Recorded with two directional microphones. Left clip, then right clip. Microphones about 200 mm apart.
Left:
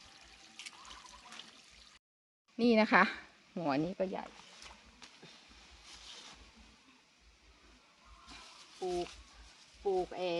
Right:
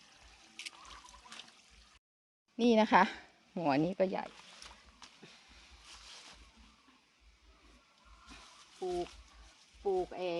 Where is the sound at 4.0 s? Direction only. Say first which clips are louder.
Right 4 dB; 40° right (ahead or behind).